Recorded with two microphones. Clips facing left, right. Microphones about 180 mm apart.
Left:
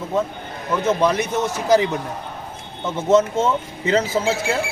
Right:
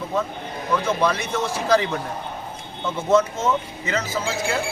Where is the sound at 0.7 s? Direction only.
20° left (ahead or behind).